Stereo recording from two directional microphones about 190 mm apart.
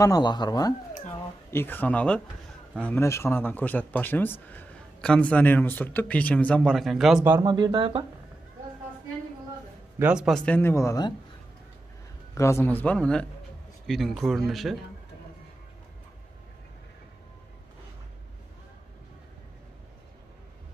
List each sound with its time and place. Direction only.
0.0 s speech: 20° left (ahead or behind); by 7.2 s centre (ahead or behind)
7.2 s speech: 15° right (ahead or behind)
9.9 s speech: 5° right (ahead or behind); by 11.1 s 20° left (ahead or behind)
12.4 s speech: 15° left (ahead or behind)